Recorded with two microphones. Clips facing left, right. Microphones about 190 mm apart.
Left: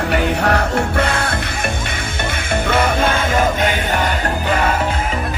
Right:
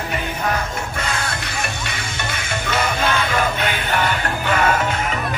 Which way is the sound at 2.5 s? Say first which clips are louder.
Left 6 dB; 55° left (ahead or behind).